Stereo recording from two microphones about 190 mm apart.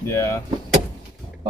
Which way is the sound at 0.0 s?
15° left (ahead or behind).